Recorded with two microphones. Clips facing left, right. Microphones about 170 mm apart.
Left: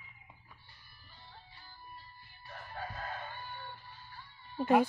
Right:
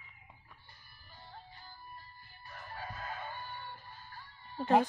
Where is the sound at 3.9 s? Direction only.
45° right (ahead or behind).